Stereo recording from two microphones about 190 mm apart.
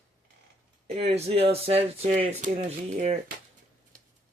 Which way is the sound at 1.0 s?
35° right (ahead or behind).